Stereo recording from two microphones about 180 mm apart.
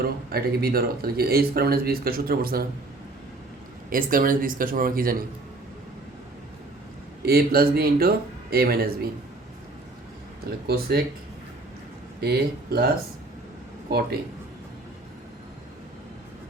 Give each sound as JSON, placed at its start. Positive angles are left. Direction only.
{"t": 0.0, "sound": "speech", "side_deg": -60}
{"t": 3.8, "sound": "speech", "side_deg": -50}
{"t": 7.2, "sound": "speech", "side_deg": -60}
{"t": 10.4, "sound": "speech", "side_deg": -60}
{"t": 12.2, "sound": "speech", "side_deg": -60}